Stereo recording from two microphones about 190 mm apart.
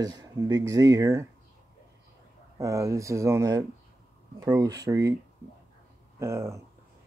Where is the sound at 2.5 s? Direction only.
15° right (ahead or behind).